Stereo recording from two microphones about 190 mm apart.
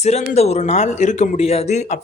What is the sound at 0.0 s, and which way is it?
Speech, 35° left (ahead or behind).